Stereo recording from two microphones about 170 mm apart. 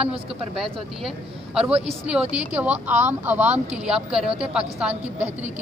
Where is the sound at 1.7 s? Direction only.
35° right (ahead or behind).